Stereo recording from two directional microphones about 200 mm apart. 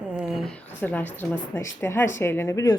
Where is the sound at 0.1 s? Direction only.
5° right (ahead or behind).